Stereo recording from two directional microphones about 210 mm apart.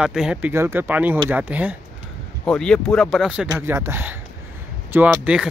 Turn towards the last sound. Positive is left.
turn(degrees=-5)  # may be behind; listen again after turning